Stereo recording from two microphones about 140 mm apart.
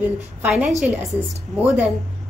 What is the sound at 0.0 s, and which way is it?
Speech, 10° right (ahead or behind).